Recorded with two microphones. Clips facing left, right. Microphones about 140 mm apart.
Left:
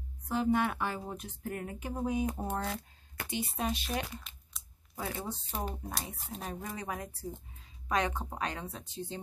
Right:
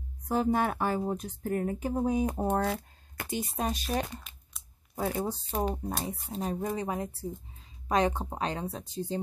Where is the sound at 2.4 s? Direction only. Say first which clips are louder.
Right 7 dB; 50° right (ahead or behind).